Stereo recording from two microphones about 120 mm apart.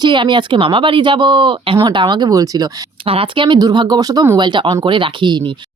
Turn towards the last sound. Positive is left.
turn(degrees=-40)  # may be behind; listen again after turning